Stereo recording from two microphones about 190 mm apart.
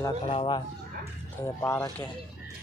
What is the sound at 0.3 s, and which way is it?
Speech, 25° left (ahead or behind).